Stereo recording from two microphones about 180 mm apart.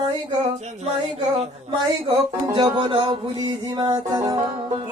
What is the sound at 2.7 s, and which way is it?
A man's voice, 25° right (ahead or behind).